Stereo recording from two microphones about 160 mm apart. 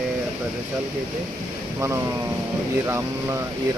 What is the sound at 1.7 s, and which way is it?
Speech, 15° right (ahead or behind).